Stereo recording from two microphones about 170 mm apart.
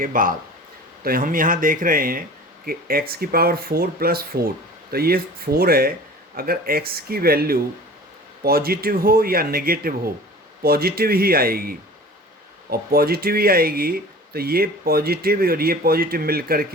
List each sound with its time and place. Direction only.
0.0 s speech: 55° right (ahead or behind)